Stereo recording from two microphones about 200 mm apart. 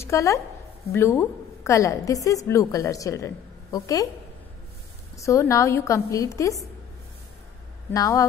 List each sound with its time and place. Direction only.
0.0 s a woman's voice: 15° left (ahead or behind)
5.1 s a woman's voice: 15° left (ahead or behind)
7.9 s a woman's voice: 15° left (ahead or behind)